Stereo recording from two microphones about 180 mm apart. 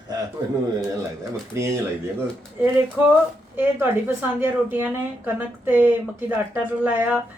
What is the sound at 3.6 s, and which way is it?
A woman's voice, 10° right (ahead or behind).